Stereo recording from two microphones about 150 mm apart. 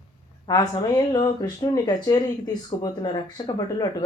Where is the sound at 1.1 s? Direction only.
30° left (ahead or behind).